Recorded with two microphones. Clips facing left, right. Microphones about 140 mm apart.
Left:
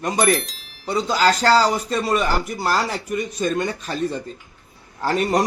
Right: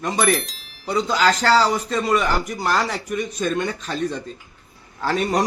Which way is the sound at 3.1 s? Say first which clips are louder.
Left 1 dB; 35° left (ahead or behind).